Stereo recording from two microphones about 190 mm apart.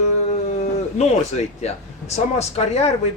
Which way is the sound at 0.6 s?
35° left (ahead or behind).